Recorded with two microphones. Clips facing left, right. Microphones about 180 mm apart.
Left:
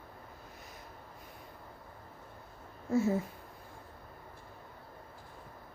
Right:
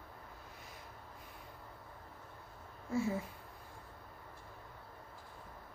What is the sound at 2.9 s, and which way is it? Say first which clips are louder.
Speech: left 6 dB; 45° left (ahead or behind).